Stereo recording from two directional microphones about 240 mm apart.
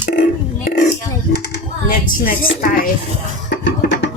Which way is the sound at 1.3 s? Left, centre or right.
Left.